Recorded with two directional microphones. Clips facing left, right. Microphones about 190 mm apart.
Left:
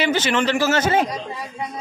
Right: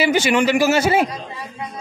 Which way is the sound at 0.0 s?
10° right (ahead or behind).